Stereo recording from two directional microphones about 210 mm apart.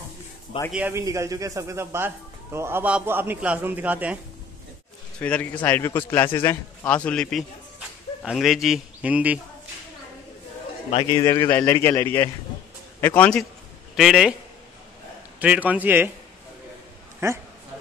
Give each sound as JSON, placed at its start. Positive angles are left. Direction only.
{"t": 0.7, "sound": "a man's voice", "side_deg": -5}
{"t": 5.2, "sound": "a man's voice", "side_deg": 5}
{"t": 10.9, "sound": "a man's voice", "side_deg": 25}
{"t": 11.4, "sound": "a man's voice", "side_deg": 10}
{"t": 15.3, "sound": "a man's voice", "side_deg": -5}
{"t": 17.2, "sound": "a man's voice", "side_deg": -15}